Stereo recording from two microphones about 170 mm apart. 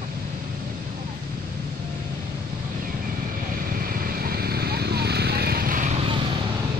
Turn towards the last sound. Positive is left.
turn(degrees=-55)  # may be behind; listen again after turning